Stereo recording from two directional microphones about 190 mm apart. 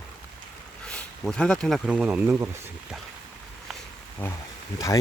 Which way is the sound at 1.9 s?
5° right (ahead or behind).